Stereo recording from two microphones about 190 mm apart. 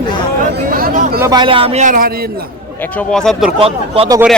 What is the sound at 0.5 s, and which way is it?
Chatter, 50° right (ahead or behind).